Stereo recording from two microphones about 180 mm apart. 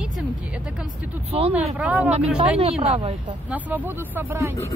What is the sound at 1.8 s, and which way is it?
Speech, 5° right (ahead or behind).